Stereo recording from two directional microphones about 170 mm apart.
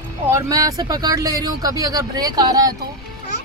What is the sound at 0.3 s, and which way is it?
Speech, 20° right (ahead or behind).